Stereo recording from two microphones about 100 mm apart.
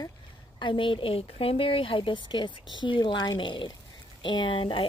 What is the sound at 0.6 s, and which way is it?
Speech, 55° left (ahead or behind).